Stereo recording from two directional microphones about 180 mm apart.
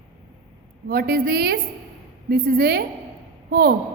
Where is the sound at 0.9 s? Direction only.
55° right (ahead or behind).